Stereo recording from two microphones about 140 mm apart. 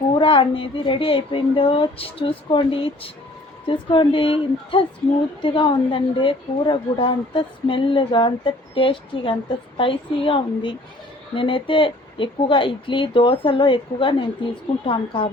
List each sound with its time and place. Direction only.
0.2 s a woman's voice: 40° left (ahead or behind)